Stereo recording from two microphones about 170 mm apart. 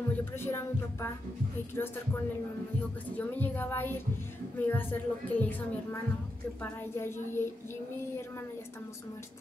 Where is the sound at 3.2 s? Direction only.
10° left (ahead or behind).